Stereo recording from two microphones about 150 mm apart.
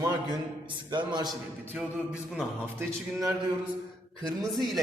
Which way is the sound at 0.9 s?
30° right (ahead or behind).